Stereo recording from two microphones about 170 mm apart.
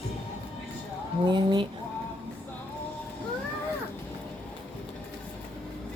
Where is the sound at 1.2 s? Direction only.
25° right (ahead or behind).